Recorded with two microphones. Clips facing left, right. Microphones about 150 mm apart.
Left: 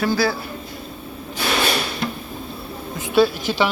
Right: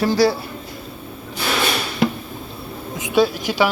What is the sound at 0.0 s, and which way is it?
Speech, 35° right (ahead or behind).